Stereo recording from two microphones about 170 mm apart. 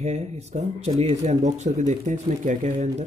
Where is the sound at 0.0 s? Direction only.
40° right (ahead or behind).